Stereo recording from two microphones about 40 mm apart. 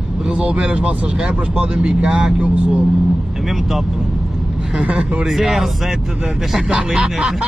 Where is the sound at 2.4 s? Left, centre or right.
Right.